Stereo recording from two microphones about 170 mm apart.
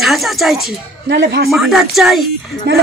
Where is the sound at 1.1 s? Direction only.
90° right.